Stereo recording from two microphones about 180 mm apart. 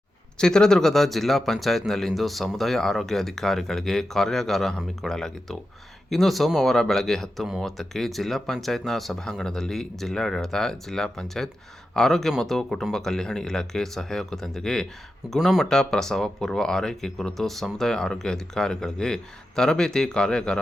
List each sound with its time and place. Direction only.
0.3 s speech: 5° left (ahead or behind)